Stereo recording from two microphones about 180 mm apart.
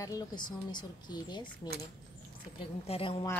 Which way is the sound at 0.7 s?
25° left (ahead or behind).